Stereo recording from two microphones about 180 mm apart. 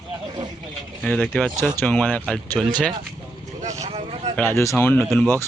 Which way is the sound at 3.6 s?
35° right (ahead or behind).